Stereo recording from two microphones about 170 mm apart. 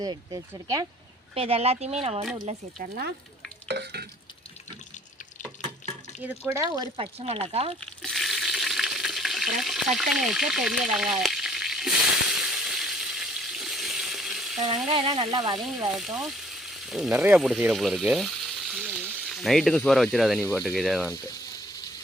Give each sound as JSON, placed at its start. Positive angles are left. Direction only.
{"t": 0.0, "sound": "speech", "side_deg": -20}
{"t": 1.4, "sound": "speech", "side_deg": -35}
{"t": 3.7, "sound": "stir", "side_deg": -85}
{"t": 6.2, "sound": "speech", "side_deg": -15}
{"t": 6.9, "sound": "speech", "side_deg": -35}
{"t": 7.8, "sound": "stir", "side_deg": 5}
{"t": 10.9, "sound": "frying", "side_deg": 0}
{"t": 14.8, "sound": "speech", "side_deg": -30}
{"t": 15.5, "sound": "speech", "side_deg": -5}
{"t": 21.1, "sound": "speech", "side_deg": 20}